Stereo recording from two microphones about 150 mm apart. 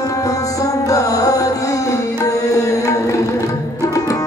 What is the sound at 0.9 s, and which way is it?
Music, 25° left (ahead or behind).